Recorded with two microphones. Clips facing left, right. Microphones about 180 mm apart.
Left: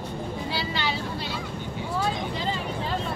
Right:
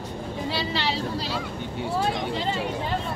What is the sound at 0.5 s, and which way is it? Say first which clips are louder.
Vehicle: right 2 dB; 35° right (ahead or behind).